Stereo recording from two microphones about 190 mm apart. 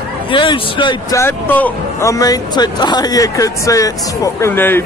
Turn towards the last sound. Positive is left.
turn(degrees=10)  # may be behind; listen again after turning